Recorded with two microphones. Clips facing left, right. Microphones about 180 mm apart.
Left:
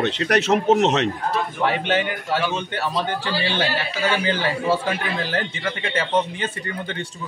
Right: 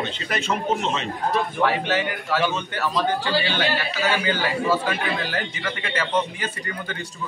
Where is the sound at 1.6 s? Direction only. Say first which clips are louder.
Left 2 dB; 25° left (ahead or behind).